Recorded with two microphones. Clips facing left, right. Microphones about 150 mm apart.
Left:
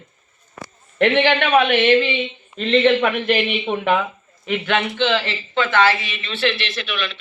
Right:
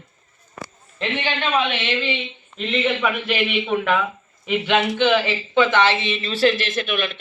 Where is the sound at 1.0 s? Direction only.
70° left (ahead or behind).